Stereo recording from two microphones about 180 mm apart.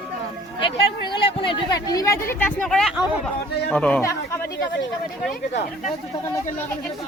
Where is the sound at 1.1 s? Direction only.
30° left (ahead or behind); by 4.4 s 10° left (ahead or behind).